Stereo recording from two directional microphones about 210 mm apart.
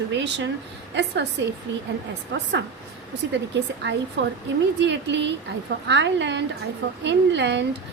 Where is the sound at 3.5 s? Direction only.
55° right (ahead or behind).